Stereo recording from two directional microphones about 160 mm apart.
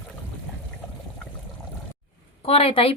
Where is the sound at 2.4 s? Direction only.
40° left (ahead or behind).